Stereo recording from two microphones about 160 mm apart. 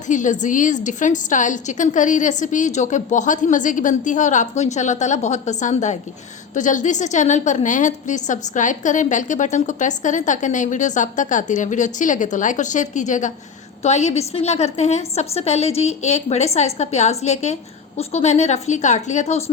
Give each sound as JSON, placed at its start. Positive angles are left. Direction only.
{"t": 0.1, "sound": "a woman's voice", "side_deg": 50}